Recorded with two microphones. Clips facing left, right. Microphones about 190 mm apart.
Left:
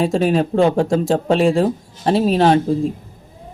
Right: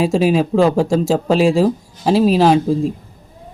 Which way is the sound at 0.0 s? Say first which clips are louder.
Right 2 dB; centre (ahead or behind).